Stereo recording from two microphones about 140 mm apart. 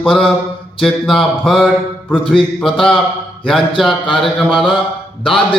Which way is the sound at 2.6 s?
5° left (ahead or behind).